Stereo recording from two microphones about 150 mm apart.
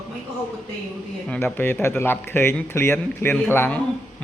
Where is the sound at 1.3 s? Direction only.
10° left (ahead or behind).